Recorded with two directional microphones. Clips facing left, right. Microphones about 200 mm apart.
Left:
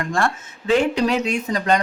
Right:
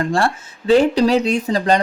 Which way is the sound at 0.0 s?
30° right (ahead or behind).